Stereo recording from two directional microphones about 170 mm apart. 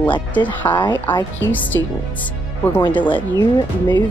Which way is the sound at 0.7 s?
25° left (ahead or behind).